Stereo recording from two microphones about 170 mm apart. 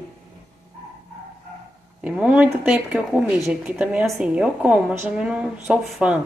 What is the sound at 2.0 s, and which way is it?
A woman's voice, 5° right (ahead or behind).